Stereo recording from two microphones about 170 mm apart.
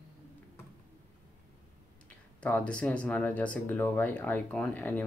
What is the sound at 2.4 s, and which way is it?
Speech, 10° left (ahead or behind).